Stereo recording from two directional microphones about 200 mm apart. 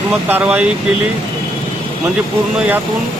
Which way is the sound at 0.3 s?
10° right (ahead or behind).